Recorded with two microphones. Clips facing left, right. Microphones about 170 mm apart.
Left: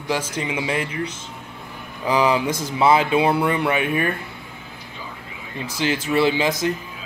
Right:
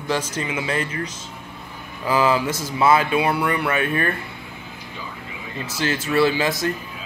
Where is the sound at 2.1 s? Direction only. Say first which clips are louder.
Even; 20° left (ahead or behind).